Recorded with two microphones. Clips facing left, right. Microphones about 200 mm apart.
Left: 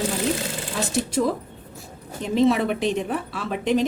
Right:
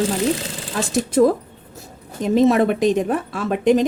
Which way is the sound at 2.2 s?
45° right (ahead or behind).